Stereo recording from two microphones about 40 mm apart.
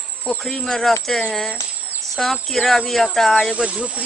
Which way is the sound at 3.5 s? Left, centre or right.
Right.